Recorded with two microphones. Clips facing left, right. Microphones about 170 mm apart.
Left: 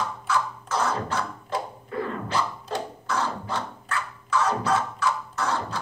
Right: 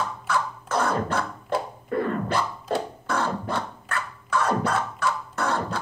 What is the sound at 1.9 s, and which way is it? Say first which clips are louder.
Beatboxing: right 6 dB; 55° right (ahead or behind).